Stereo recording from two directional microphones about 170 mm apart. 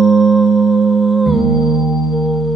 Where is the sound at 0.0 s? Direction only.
Centre (ahead or behind).